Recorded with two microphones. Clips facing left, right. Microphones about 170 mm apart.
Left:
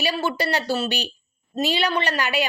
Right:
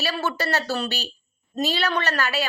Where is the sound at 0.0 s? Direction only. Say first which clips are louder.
Left 2 dB; 10° left (ahead or behind).